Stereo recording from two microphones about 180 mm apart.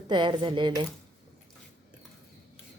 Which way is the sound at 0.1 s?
25° right (ahead or behind).